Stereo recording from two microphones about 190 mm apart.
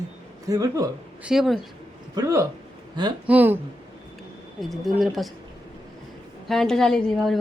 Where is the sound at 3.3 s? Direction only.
10° right (ahead or behind).